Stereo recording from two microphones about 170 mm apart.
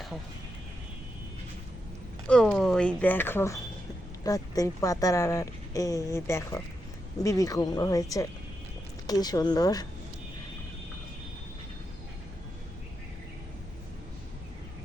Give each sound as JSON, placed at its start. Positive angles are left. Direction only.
{"t": 2.2, "sound": "a woman's voice", "side_deg": 5}